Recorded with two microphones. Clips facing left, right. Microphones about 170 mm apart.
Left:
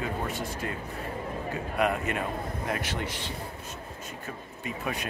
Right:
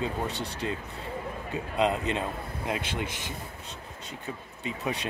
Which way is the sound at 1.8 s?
20° right (ahead or behind).